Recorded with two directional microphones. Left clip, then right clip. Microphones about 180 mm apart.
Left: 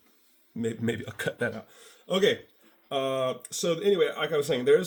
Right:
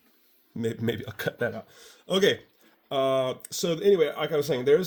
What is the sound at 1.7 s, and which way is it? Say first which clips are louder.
Speech: right 1 dB; 55° right (ahead or behind).